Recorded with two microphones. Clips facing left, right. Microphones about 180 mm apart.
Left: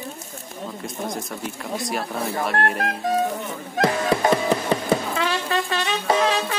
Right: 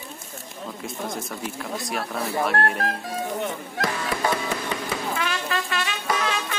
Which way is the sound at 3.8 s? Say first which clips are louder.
Left 7 dB; 25° left (ahead or behind).